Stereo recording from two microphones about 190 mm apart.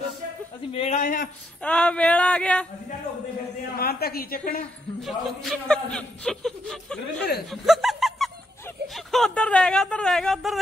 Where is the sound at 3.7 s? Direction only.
55° left (ahead or behind).